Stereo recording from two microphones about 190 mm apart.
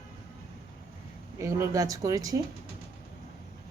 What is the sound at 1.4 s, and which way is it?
Speech, 15° right (ahead or behind).